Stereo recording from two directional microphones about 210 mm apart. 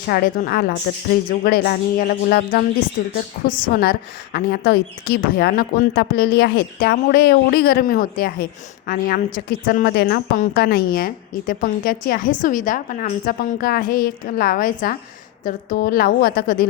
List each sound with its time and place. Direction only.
0.1 s a woman's voice: 45° left (ahead or behind)